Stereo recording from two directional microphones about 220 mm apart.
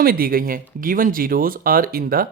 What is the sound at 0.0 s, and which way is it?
Speech, 40° right (ahead or behind).